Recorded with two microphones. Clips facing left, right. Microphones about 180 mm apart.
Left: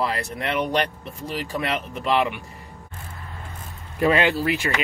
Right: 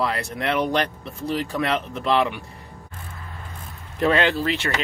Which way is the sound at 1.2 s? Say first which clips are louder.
Right 3 dB; 5° left (ahead or behind).